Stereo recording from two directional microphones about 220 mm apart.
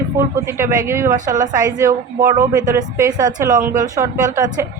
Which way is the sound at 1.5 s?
15° right (ahead or behind).